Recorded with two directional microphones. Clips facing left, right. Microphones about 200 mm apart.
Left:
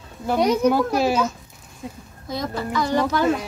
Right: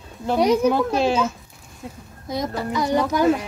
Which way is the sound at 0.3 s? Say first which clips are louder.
Right 1 dB; centre (ahead or behind).